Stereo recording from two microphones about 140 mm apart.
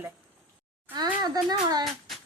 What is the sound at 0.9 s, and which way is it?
Speech, 30° right (ahead or behind).